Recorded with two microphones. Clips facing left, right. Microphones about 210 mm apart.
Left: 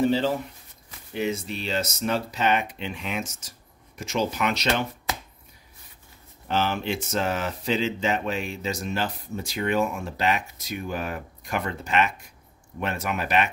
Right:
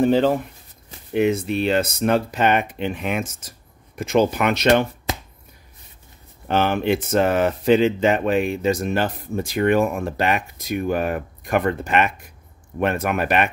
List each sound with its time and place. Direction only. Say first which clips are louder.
0.0 s speech: right 6 dB; 55° right (ahead or behind)
6.4 s speech: right 6 dB; 55° right (ahead or behind)